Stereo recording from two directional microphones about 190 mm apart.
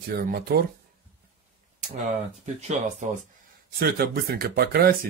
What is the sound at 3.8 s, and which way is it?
Speech, 55° right (ahead or behind).